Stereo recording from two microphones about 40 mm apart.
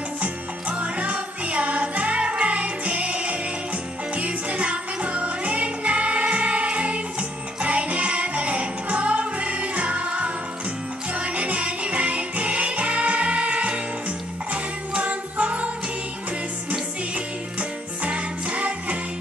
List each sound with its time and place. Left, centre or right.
0.2 s jingle bell: right
4.1 s music: right
17.1 s music: right